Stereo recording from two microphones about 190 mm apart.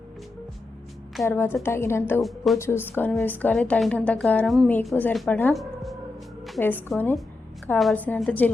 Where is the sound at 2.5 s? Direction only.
10° left (ahead or behind).